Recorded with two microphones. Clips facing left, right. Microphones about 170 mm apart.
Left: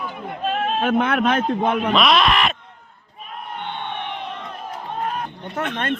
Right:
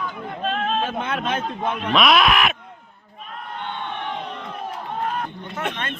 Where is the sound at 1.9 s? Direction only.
5° right (ahead or behind).